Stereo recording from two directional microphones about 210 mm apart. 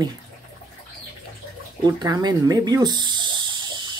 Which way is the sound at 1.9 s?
20° right (ahead or behind).